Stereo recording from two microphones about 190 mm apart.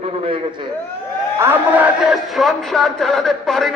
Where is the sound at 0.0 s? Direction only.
30° right (ahead or behind).